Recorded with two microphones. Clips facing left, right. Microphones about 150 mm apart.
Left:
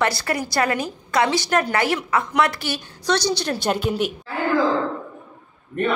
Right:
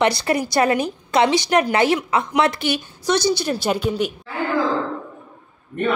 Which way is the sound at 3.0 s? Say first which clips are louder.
Right 2 dB; 10° right (ahead or behind).